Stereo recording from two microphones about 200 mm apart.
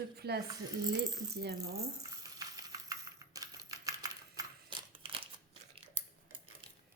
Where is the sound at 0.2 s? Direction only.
55° right (ahead or behind).